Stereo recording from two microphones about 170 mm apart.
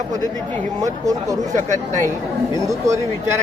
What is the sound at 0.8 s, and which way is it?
Speech, 20° right (ahead or behind).